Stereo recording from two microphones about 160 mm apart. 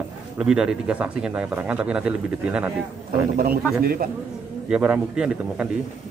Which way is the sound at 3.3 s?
65° right (ahead or behind).